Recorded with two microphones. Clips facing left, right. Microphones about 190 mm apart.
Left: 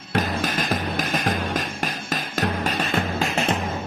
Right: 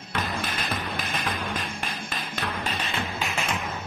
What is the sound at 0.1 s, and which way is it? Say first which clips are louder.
Music: left 7 dB; 45° left (ahead or behind).